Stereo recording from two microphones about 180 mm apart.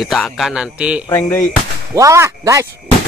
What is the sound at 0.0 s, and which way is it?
A man's voice, centre (ahead or behind).